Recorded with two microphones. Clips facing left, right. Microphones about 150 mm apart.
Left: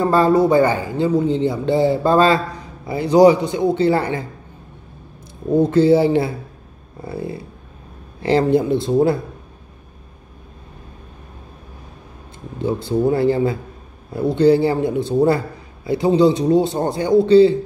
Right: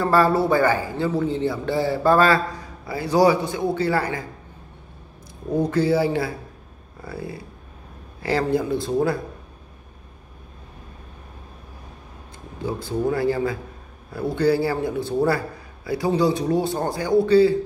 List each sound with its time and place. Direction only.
0.0 s a man's voice: 20° left (ahead or behind)
5.5 s a man's voice: 25° left (ahead or behind)
12.6 s a man's voice: 25° left (ahead or behind)